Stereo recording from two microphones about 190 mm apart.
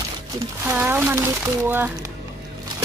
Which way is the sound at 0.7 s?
10° right (ahead or behind).